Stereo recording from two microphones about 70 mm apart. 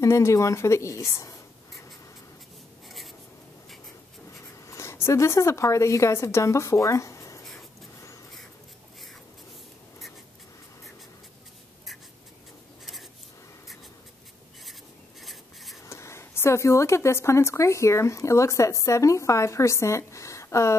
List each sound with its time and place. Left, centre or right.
0.0 s a woman's voice: left
4.3 s speech: left
14.7 s writing: centre
15.8 s a woman's voice: left